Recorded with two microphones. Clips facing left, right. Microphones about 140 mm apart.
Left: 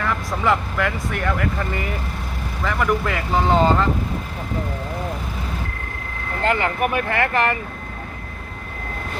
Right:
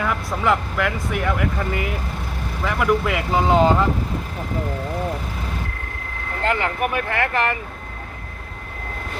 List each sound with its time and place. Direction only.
0.0 s speech: 5° right (ahead or behind)
6.5 s speech: 5° left (ahead or behind)